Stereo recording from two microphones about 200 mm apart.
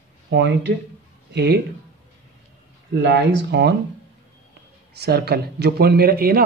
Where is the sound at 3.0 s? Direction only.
55° right (ahead or behind).